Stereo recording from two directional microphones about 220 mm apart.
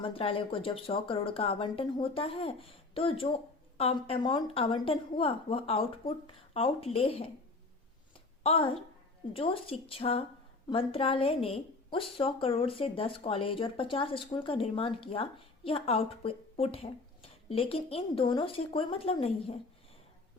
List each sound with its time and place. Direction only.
0.0 s a woman's voice: 25° left (ahead or behind)
8.4 s a woman's voice: 25° left (ahead or behind)